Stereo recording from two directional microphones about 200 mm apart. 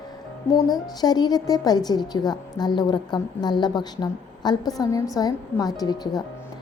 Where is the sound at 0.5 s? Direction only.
20° left (ahead or behind).